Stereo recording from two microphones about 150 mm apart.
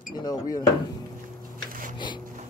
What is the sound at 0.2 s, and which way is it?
Speech, 25° left (ahead or behind).